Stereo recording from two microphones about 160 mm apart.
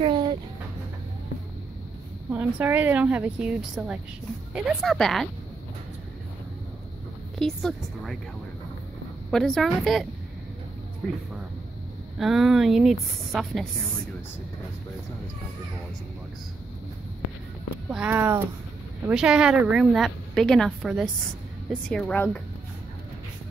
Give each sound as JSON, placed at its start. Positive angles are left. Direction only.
{"t": 0.0, "sound": "a sound", "side_deg": -30}
{"t": 2.3, "sound": "a woman's voice", "side_deg": -10}
{"t": 7.3, "sound": "a woman's voice", "side_deg": 0}
{"t": 9.3, "sound": "a woman's voice", "side_deg": 0}
{"t": 17.8, "sound": "a woman's voice", "side_deg": -10}